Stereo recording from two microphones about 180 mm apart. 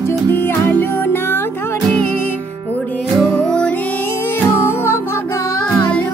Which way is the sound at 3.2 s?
5° left (ahead or behind).